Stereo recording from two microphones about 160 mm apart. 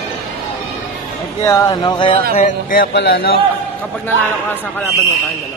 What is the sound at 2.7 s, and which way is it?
Speech, 75° left (ahead or behind).